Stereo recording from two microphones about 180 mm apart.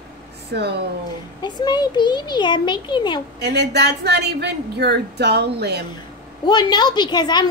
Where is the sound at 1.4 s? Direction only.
25° left (ahead or behind).